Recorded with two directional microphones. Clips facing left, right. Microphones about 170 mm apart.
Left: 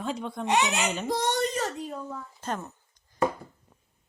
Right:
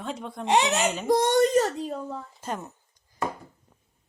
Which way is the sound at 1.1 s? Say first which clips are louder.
Right 10 dB; 50° right (ahead or behind).